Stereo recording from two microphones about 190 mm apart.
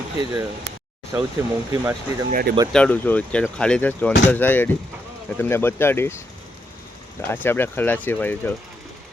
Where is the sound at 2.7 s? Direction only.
5° left (ahead or behind).